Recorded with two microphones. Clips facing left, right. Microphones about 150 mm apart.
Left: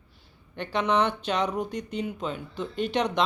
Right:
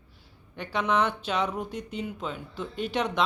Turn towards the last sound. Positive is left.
turn(degrees=-5)  # may be behind; listen again after turning